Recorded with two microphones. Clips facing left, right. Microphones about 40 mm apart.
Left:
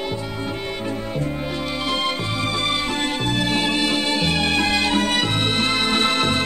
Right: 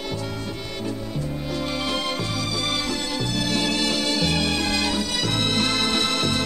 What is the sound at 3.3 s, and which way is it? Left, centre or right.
Music, left.